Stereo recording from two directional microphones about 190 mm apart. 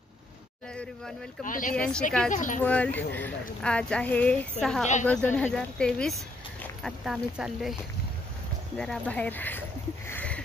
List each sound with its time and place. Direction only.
1.4 s speech: 45° left (ahead or behind)
1.8 s speech: 5° left (ahead or behind)
2.3 s speech: 40° left (ahead or behind)
2.6 s speech: 5° left (ahead or behind)
8.7 s speech: 5° left (ahead or behind)
10.0 s a sound: 10° left (ahead or behind)